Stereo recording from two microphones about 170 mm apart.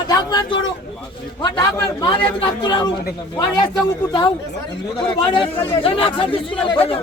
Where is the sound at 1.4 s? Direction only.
25° left (ahead or behind).